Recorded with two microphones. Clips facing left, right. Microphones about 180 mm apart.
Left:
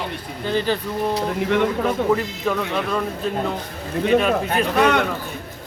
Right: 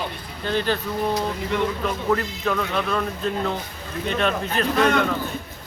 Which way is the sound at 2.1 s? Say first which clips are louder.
Left 2 dB; 10° left (ahead or behind).